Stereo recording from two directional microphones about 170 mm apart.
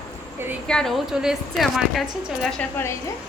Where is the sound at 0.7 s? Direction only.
5° left (ahead or behind).